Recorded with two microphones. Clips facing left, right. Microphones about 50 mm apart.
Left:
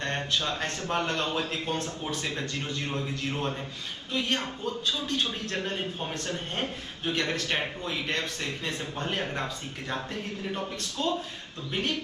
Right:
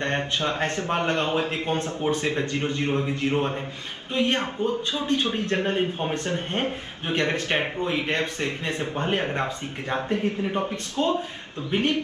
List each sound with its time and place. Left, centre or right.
0.0 s a man's voice: right